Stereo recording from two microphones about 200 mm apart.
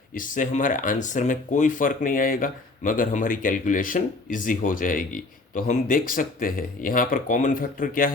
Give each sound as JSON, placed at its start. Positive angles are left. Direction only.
{"t": 0.1, "sound": "speech", "side_deg": 40}